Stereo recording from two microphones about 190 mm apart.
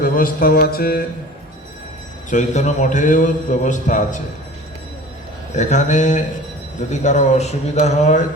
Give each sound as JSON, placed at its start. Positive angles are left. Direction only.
{"t": 0.0, "sound": "a sound", "side_deg": 50}
{"t": 2.3, "sound": "a man's voice", "side_deg": 40}
{"t": 5.5, "sound": "a man's voice", "side_deg": 40}